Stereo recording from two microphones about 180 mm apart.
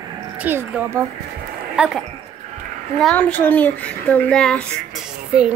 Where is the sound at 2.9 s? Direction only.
5° left (ahead or behind).